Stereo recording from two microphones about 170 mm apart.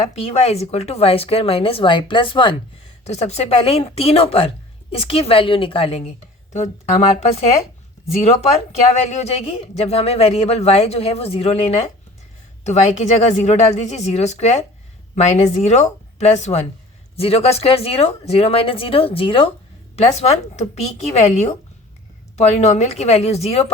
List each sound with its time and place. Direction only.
0.1 s speech: 40° left (ahead or behind)
3.0 s speech: 40° left (ahead or behind)